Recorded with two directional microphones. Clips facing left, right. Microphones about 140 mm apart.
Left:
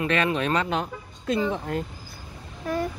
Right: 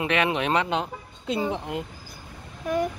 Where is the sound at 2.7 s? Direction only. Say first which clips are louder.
Right 2 dB; 15° right (ahead or behind).